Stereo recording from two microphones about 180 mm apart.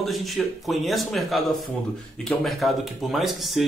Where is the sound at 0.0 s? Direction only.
Centre (ahead or behind).